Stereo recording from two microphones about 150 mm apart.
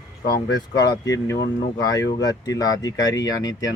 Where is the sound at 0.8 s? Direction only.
25° left (ahead or behind).